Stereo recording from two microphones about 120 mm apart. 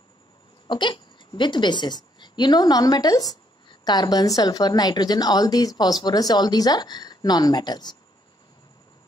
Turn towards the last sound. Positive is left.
turn(degrees=35)  # may be behind; listen again after turning